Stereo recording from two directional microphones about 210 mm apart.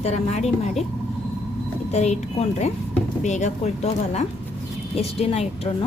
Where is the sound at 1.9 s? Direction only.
35° left (ahead or behind).